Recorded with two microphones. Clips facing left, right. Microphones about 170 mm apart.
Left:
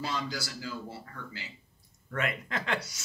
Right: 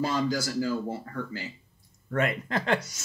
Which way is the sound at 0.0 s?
45° right (ahead or behind).